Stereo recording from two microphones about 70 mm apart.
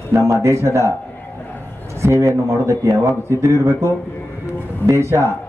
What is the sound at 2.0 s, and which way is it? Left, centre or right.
Speech, right.